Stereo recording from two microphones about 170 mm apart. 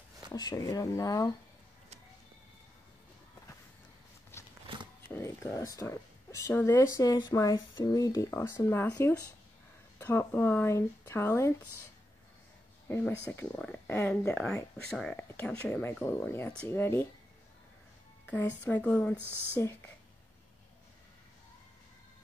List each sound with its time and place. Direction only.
0.3 s speech: 20° left (ahead or behind)
4.3 s a sound: 15° left (ahead or behind)
5.0 s speech: 15° left (ahead or behind)
12.8 s speech: 15° left (ahead or behind)
18.2 s music: 10° left (ahead or behind)
18.7 s speech: 10° left (ahead or behind)